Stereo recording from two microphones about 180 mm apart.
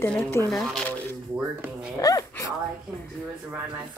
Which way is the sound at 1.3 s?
10° right (ahead or behind).